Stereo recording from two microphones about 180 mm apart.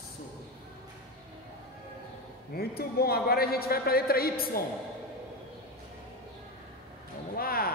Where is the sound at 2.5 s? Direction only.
60° left (ahead or behind).